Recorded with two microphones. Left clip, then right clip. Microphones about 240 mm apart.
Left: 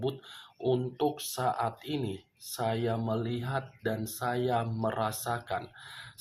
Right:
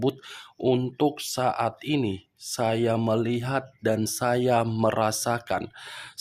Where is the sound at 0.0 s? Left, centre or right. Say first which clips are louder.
Right 7 dB; right.